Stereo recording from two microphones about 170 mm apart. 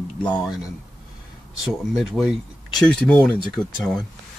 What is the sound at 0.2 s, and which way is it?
Speech, 5° left (ahead or behind).